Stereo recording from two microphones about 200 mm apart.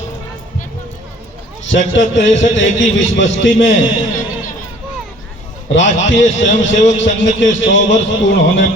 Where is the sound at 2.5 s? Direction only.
65° left (ahead or behind).